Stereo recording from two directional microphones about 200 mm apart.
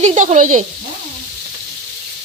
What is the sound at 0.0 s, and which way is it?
Speech, 35° right (ahead or behind).